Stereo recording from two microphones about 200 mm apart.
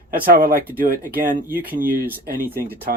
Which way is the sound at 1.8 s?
45° right (ahead or behind).